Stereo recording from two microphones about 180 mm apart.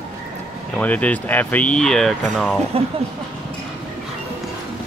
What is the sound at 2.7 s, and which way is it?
Speech, 30° right (ahead or behind).